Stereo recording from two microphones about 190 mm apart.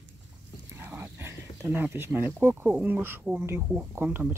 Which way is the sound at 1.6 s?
10° right (ahead or behind).